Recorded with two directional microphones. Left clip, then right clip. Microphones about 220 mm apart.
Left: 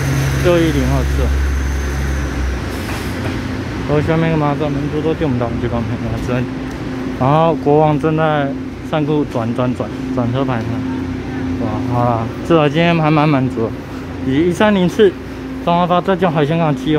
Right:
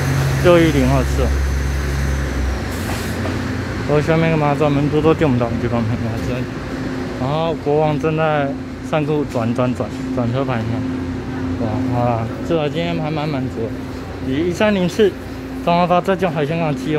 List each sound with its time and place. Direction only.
0.5 s speech: 10° right (ahead or behind)
3.9 s speech: centre (ahead or behind)
4.6 s speech: 15° right (ahead or behind)
7.2 s speech: 15° left (ahead or behind)
12.4 s speech: 20° left (ahead or behind)